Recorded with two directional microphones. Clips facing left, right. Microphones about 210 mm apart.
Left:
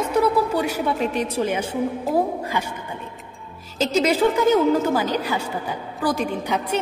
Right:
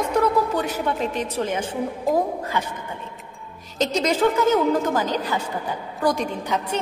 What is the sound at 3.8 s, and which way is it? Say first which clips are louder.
A woman's voice: left 2 dB; 5° left (ahead or behind).